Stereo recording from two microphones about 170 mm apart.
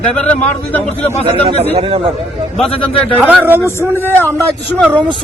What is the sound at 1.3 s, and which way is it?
Speech, 35° right (ahead or behind).